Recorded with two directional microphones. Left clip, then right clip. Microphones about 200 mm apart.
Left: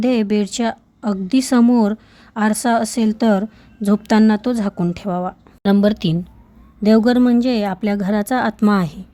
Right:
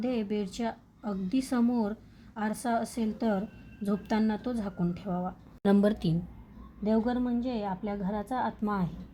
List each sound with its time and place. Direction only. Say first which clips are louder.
0.0 s speech: left 14 dB; 45° left (ahead or behind)
5.6 s a woman's voice: left 10 dB; 25° left (ahead or behind)
6.8 s speech: left 15 dB; 50° left (ahead or behind)